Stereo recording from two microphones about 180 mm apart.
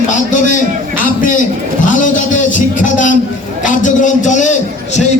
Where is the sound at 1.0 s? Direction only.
50° left (ahead or behind).